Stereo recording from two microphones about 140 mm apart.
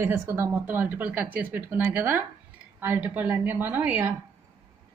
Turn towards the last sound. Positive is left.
turn(degrees=-15)  # may be behind; listen again after turning